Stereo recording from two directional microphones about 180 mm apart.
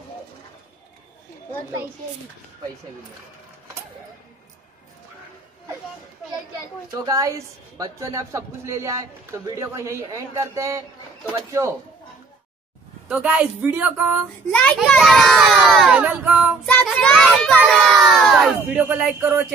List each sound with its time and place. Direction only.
7.1 s a woman's voice: 20° right (ahead or behind)
13.1 s a woman's voice: 5° right (ahead or behind)
14.5 s a child's voice: 5° left (ahead or behind)
16.6 s child singing: 5° left (ahead or behind)
17.6 s speech: centre (ahead or behind)